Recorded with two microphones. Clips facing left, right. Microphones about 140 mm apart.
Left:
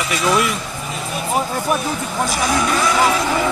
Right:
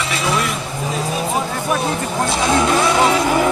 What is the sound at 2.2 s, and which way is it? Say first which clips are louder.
Speech: right 3 dB; 25° right (ahead or behind).